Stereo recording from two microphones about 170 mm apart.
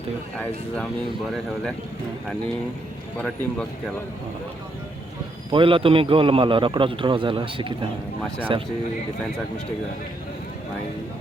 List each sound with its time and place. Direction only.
3.2 s speech: 5° left (ahead or behind)
5.5 s a man's voice: 30° right (ahead or behind)